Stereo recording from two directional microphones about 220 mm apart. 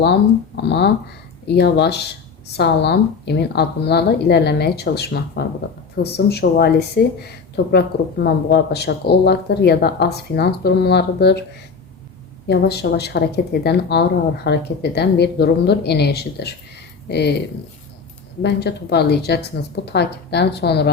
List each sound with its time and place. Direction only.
0.5 s speech: 50° left (ahead or behind)
12.5 s speech: 50° left (ahead or behind)
18.4 s speech: 50° left (ahead or behind)